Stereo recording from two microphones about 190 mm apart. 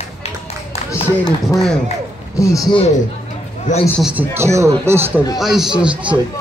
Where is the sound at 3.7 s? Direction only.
40° left (ahead or behind).